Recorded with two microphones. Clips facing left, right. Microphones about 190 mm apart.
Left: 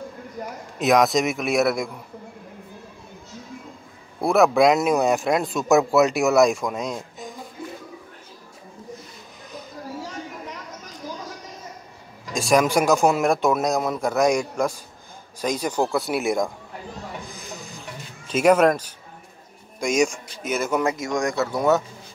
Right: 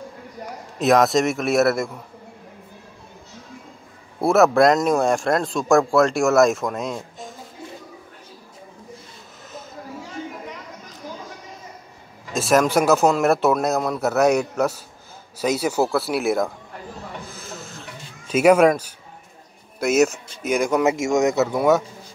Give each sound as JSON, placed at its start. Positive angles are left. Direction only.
{"t": 0.7, "sound": "speech", "side_deg": 0}
{"t": 4.2, "sound": "speech", "side_deg": 0}
{"t": 12.4, "sound": "speech", "side_deg": 0}
{"t": 13.7, "sound": "a man's voice", "side_deg": 10}
{"t": 14.0, "sound": "speech", "side_deg": -5}
{"t": 17.1, "sound": "hiss", "side_deg": 15}
{"t": 18.3, "sound": "speech", "side_deg": -10}
{"t": 20.8, "sound": "speech", "side_deg": -25}
{"t": 21.5, "sound": "speech", "side_deg": -10}